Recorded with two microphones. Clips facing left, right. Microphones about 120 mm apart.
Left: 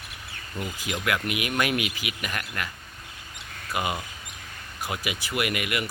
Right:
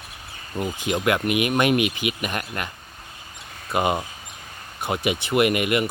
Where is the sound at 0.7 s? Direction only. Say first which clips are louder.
Right 6 dB; 25° right (ahead or behind).